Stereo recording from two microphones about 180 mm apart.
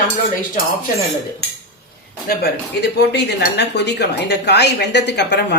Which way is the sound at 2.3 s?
65° left (ahead or behind).